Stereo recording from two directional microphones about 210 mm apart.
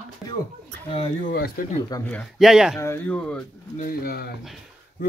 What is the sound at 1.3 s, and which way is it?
Speech, 40° left (ahead or behind).